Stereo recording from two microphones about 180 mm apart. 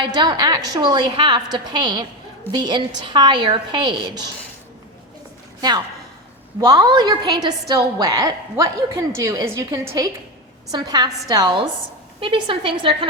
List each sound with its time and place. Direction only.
0.0 s a woman's voice: 25° right (ahead or behind)
5.5 s a woman's voice: 25° right (ahead or behind)